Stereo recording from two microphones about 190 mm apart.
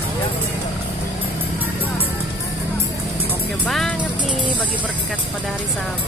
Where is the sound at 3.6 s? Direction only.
5° left (ahead or behind).